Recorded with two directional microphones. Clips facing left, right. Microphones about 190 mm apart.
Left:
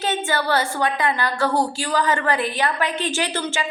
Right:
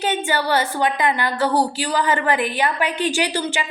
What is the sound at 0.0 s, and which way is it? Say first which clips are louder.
A woman's voice: right 1 dB; 15° right (ahead or behind).